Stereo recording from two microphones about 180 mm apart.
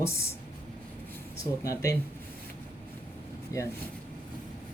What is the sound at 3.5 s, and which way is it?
Speech, 20° left (ahead or behind).